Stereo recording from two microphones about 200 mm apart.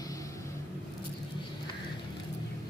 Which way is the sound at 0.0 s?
15° left (ahead or behind).